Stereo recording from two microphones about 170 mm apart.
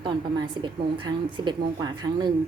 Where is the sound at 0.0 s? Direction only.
25° right (ahead or behind).